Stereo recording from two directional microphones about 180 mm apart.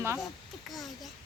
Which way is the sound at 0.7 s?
Centre (ahead or behind).